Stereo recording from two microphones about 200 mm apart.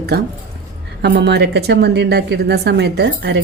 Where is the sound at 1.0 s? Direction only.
55° right (ahead or behind).